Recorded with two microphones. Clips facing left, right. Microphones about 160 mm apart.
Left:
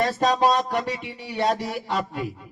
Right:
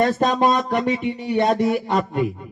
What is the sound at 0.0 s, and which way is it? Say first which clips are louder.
Music: right 3 dB; 55° right (ahead or behind).